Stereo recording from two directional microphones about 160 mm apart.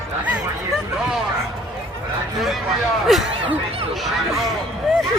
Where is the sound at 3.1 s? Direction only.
Centre (ahead or behind).